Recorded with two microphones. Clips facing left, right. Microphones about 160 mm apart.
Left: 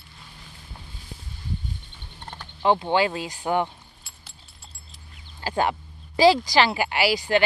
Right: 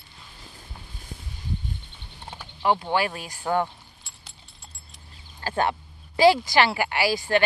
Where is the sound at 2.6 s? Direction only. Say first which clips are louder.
Left 3 dB; 25° left (ahead or behind).